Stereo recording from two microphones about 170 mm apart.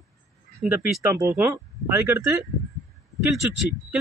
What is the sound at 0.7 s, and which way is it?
Speech, 15° right (ahead or behind).